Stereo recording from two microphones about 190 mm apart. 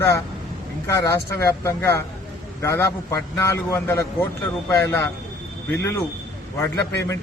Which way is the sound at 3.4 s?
15° left (ahead or behind).